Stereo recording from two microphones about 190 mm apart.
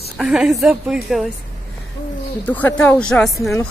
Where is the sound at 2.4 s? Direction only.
10° left (ahead or behind).